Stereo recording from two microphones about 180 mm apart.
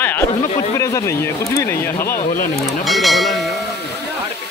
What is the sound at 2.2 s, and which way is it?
Speech, 45° left (ahead or behind).